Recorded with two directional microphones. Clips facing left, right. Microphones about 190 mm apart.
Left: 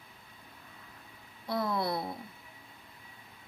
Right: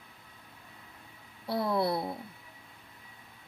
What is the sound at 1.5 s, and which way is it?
Speech, 30° right (ahead or behind).